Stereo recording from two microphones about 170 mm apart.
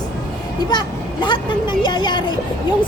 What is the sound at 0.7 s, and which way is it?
Speech, 25° left (ahead or behind).